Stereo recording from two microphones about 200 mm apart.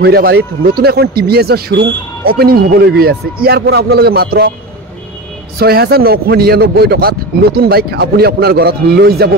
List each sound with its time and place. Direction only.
0.0 s a man's voice: 50° right (ahead or behind)
5.6 s a man's voice: 50° right (ahead or behind)